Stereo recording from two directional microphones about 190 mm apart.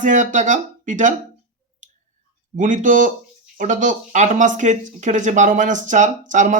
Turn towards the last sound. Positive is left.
turn(degrees=-40)  # may be behind; listen again after turning